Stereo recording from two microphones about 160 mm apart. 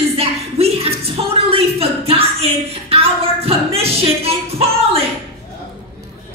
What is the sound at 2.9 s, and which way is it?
Music, 35° right (ahead or behind).